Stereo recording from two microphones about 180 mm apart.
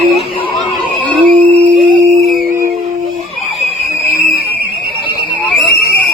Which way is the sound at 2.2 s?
Centre (ahead or behind).